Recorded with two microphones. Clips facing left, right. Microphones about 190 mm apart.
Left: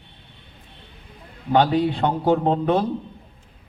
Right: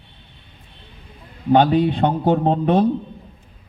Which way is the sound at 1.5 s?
20° right (ahead or behind).